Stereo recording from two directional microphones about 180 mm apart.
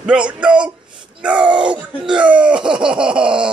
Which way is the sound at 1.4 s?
25° right (ahead or behind).